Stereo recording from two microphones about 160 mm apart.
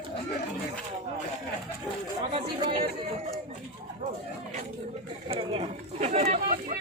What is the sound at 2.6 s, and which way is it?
Speech, 30° right (ahead or behind).